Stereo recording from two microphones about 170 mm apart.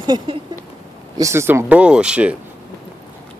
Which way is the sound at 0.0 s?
25° right (ahead or behind).